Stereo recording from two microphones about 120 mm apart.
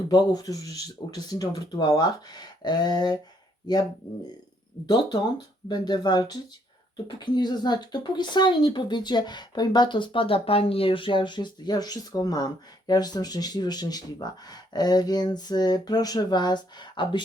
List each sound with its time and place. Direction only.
0.1 s speech: 35° left (ahead or behind)
5.6 s speech: 35° left (ahead or behind)